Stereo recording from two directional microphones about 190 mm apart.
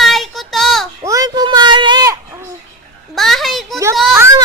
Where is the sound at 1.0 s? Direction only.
15° right (ahead or behind).